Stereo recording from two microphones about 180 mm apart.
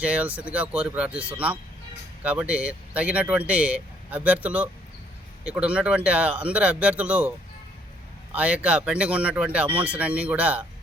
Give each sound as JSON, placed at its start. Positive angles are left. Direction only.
{"t": 0.0, "sound": "speech", "side_deg": -5}